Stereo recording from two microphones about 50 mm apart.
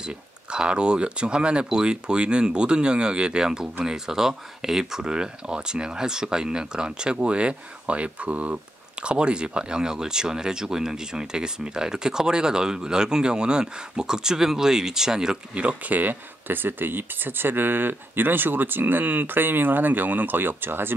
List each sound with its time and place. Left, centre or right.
0.0 s speech: centre
15.6 s speech: right